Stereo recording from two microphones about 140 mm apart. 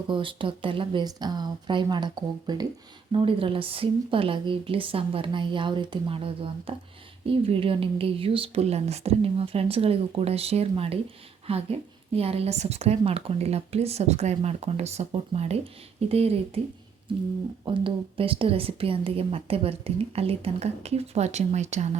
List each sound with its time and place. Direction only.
0.1 s speech: 35° right (ahead or behind)
17.7 s speech: 40° right (ahead or behind); by 21.9 s 55° right (ahead or behind)